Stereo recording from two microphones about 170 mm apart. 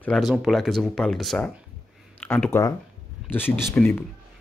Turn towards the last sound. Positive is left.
turn(degrees=10)  # may be behind; listen again after turning